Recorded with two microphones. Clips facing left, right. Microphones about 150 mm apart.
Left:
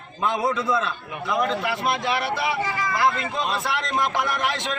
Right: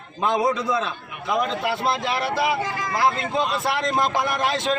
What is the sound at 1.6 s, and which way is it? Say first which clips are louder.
A man's voice: right 1 dB; 35° right (ahead or behind).